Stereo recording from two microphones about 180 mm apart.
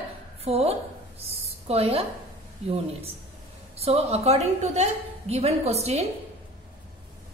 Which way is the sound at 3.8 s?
35° right (ahead or behind).